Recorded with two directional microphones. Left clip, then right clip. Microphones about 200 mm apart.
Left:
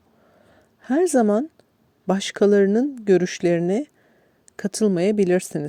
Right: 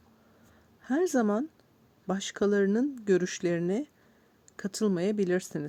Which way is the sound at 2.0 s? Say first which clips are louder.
Left 10 dB; 35° left (ahead or behind).